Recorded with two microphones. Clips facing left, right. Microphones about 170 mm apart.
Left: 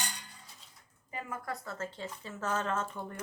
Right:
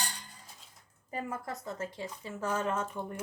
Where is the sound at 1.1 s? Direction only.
35° right (ahead or behind).